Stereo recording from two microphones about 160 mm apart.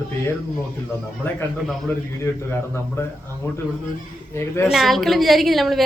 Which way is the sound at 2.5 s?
15° left (ahead or behind).